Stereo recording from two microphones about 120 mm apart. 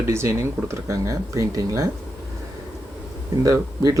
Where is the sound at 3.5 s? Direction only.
30° right (ahead or behind).